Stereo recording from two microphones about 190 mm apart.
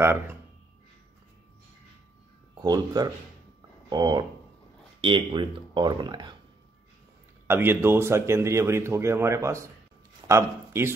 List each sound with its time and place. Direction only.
0.0 s a man's voice: 15° right (ahead or behind)
2.6 s speech: 20° right (ahead or behind)
7.4 s a man's voice: 10° right (ahead or behind)